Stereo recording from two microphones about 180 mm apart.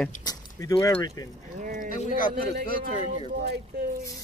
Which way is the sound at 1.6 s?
45° right (ahead or behind).